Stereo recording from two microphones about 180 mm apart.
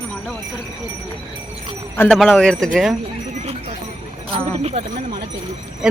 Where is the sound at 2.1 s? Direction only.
5° left (ahead or behind).